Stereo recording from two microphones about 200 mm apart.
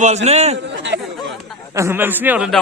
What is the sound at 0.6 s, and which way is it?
Chatter, 65° right (ahead or behind).